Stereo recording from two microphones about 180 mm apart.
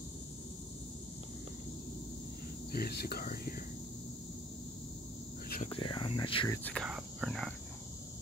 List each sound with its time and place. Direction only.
2.7 s speech: 60° left (ahead or behind)
5.7 s cricket: 25° left (ahead or behind)
6.5 s speech: 5° left (ahead or behind)